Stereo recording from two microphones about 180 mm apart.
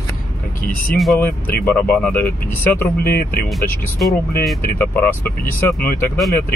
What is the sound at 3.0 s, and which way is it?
Speech, 55° left (ahead or behind).